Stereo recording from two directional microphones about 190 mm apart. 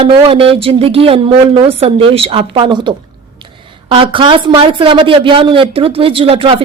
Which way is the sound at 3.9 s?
25° right (ahead or behind).